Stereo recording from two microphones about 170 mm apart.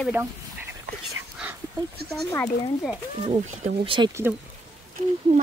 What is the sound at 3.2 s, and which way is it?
Speech, 35° right (ahead or behind).